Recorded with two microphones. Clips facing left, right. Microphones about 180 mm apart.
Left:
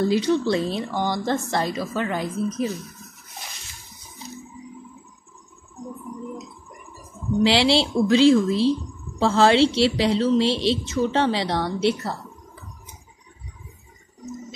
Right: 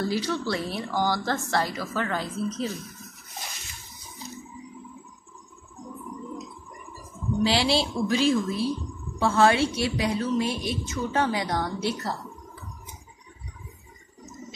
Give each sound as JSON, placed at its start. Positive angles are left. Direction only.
{"t": 0.0, "sound": "a woman's voice", "side_deg": 20}
{"t": 7.5, "sound": "a woman's voice", "side_deg": 30}
{"t": 8.2, "sound": "a woman's voice", "side_deg": 90}
{"t": 9.2, "sound": "a woman's voice", "side_deg": 25}
{"t": 10.5, "sound": "a woman's voice", "side_deg": 85}
{"t": 10.9, "sound": "a woman's voice", "side_deg": 25}